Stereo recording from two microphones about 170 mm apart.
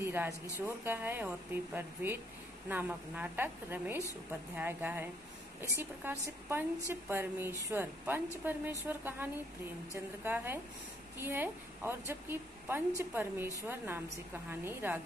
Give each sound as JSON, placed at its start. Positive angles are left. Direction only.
{"t": 0.0, "sound": "a woman's voice", "side_deg": -10}